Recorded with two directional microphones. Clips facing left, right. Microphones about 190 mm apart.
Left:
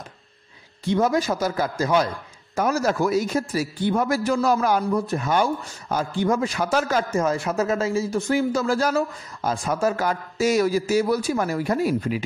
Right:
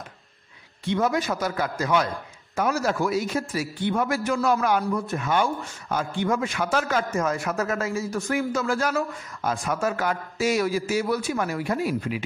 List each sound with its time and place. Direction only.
0.8 s a man's voice: 35° left (ahead or behind)